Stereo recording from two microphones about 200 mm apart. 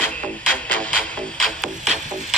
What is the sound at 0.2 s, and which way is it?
Music, 5° left (ahead or behind).